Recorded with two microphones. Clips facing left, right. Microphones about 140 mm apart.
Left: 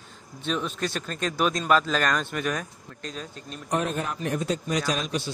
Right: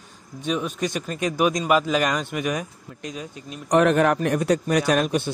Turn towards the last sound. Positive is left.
turn(degrees=-55)  # may be behind; listen again after turning